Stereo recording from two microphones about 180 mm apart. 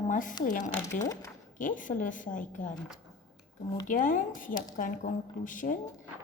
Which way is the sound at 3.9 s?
50° left (ahead or behind).